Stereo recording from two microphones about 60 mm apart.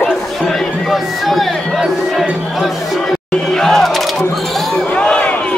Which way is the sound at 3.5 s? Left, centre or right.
Centre.